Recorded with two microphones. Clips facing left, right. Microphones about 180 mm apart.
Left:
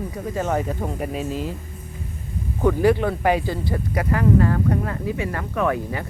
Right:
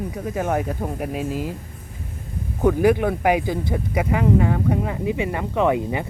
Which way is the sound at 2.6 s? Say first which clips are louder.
Right 1 dB; 15° right (ahead or behind).